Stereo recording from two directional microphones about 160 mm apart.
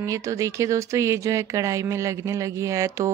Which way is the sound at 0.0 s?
20° right (ahead or behind).